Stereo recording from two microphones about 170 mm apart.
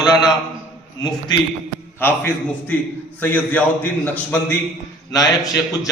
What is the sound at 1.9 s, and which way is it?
A man's voice, 15° left (ahead or behind).